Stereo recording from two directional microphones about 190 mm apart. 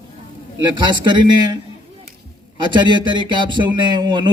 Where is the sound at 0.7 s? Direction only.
25° right (ahead or behind).